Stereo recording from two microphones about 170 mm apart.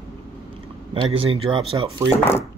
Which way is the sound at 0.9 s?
35° right (ahead or behind).